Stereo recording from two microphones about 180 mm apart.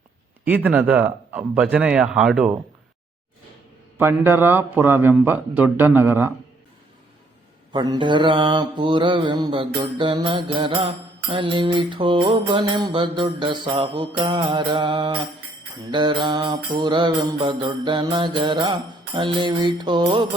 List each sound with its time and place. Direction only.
0.4 s speech: 10° right (ahead or behind)
3.9 s speech: 10° right (ahead or behind)
7.7 s mantra: 25° right (ahead or behind)